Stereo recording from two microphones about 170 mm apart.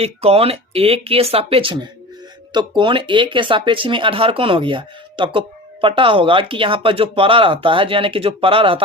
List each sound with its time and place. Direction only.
0.0 s speech: 35° right (ahead or behind)